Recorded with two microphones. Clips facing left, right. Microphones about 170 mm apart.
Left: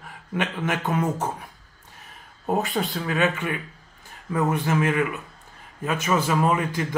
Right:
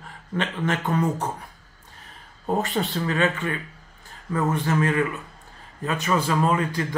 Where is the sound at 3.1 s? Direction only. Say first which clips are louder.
Left 1 dB; 15° left (ahead or behind).